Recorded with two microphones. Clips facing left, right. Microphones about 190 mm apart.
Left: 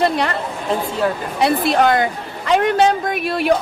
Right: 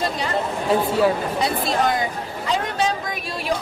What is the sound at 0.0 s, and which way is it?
Speech, 65° left (ahead or behind).